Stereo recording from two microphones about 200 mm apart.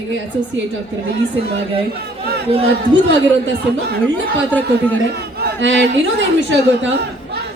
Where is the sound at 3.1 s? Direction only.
65° right (ahead or behind).